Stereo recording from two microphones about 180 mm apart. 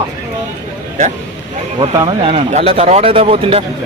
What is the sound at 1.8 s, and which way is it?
Speech, 25° right (ahead or behind).